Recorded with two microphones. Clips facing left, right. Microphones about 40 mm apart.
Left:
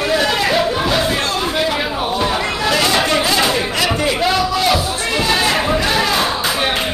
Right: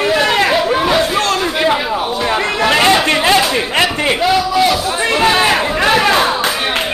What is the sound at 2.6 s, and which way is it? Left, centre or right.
Speech, right.